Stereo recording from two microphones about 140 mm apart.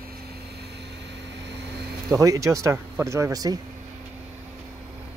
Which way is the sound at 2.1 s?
25° right (ahead or behind).